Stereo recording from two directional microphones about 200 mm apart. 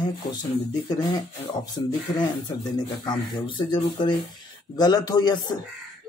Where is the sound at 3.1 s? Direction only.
25° left (ahead or behind).